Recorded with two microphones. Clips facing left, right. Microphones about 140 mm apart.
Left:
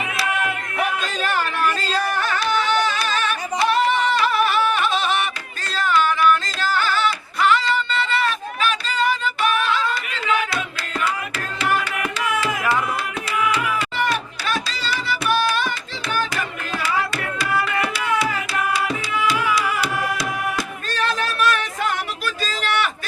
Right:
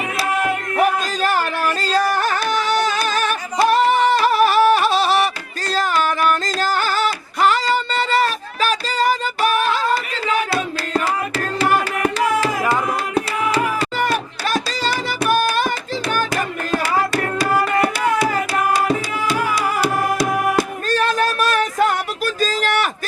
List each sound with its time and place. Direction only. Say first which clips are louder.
0.2 s music: right 5 dB; 40° right (ahead or behind)